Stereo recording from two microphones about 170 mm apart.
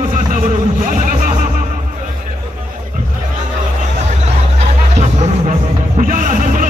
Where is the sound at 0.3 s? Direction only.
50° right (ahead or behind).